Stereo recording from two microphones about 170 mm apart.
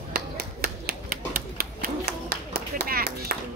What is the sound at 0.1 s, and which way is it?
Typewriter, 60° right (ahead or behind).